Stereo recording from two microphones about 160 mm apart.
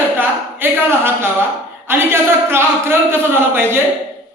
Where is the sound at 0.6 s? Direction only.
15° right (ahead or behind).